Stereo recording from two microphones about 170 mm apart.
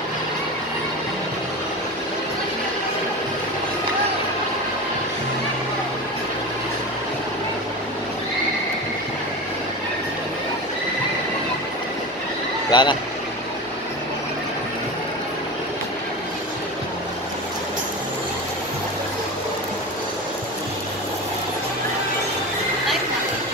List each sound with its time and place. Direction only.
12.7 s speech: 30° left (ahead or behind)